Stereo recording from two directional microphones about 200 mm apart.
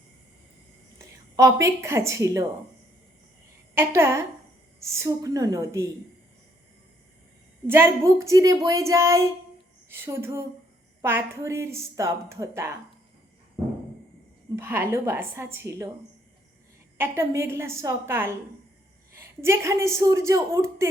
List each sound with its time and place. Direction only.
0.9 s a woman's voice: 15° right (ahead or behind)
3.8 s a woman's voice: 15° right (ahead or behind)
7.7 s a woman's voice: 15° right (ahead or behind)
14.5 s a woman's voice: 10° right (ahead or behind)
17.0 s a woman's voice: 15° right (ahead or behind)